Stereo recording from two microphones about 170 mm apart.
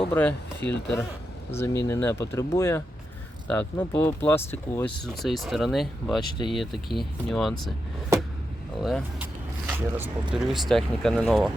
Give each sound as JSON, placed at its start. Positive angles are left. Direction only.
{"t": 0.1, "sound": "speech", "side_deg": 10}
{"t": 5.2, "sound": "speech", "side_deg": 0}
{"t": 8.8, "sound": "speech", "side_deg": -5}